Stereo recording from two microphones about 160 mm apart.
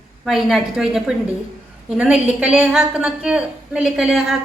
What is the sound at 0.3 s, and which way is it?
A woman's voice, centre (ahead or behind).